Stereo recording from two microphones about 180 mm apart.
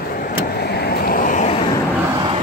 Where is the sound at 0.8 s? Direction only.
55° left (ahead or behind).